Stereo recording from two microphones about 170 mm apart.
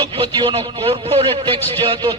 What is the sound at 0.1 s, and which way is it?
A man's voice, 30° right (ahead or behind).